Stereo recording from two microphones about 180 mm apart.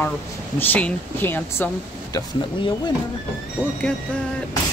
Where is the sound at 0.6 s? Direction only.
10° left (ahead or behind).